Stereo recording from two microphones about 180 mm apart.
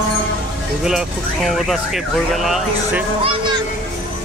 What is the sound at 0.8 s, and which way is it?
Speech, 5° right (ahead or behind).